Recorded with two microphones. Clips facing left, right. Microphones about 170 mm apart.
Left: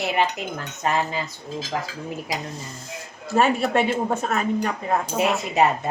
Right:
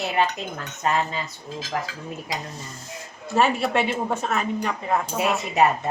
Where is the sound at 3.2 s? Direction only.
40° left (ahead or behind).